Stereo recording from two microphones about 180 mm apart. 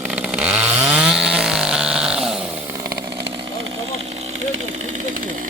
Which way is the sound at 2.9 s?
65° right (ahead or behind).